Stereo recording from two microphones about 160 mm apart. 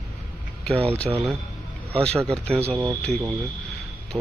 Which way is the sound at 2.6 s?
10° right (ahead or behind).